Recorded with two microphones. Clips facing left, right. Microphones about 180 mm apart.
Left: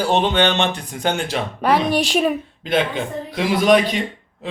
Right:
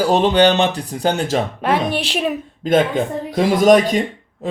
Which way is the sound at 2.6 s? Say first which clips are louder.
Right 6 dB; 45° right (ahead or behind).